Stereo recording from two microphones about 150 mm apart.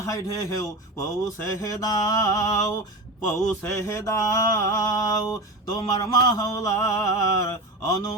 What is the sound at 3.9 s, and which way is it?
Male singing, 20° left (ahead or behind).